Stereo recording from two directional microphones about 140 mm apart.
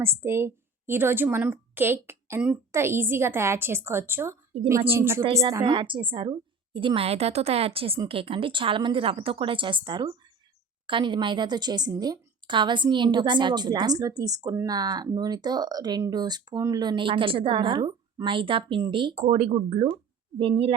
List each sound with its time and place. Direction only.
0.0 s a woman's voice: 15° right (ahead or behind)
5.6 s a woman's voice: 35° right (ahead or behind)